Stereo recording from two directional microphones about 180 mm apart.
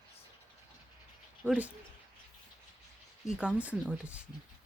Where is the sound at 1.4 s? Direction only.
5° right (ahead or behind).